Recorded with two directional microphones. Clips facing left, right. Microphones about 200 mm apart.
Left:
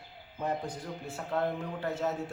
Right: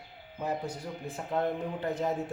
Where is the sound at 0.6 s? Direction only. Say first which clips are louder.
Right 1 dB; 15° right (ahead or behind).